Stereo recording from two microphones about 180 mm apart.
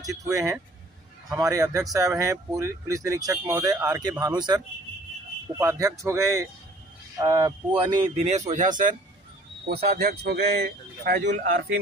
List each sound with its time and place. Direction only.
0.0 s speech: 20° right (ahead or behind)
8.2 s speech: 40° right (ahead or behind)
9.7 s speech: 60° right (ahead or behind)